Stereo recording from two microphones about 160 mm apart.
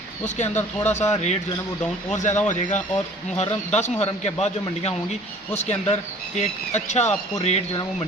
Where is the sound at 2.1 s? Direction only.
50° left (ahead or behind).